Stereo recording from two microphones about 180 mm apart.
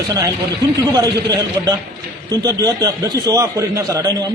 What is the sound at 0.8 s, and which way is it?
A man's voice, 20° right (ahead or behind).